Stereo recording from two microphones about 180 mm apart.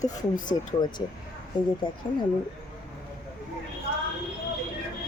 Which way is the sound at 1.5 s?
25° left (ahead or behind).